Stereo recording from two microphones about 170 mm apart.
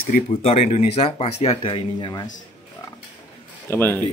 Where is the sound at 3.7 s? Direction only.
10° left (ahead or behind).